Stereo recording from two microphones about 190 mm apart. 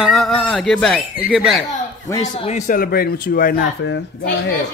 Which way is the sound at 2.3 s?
35° left (ahead or behind).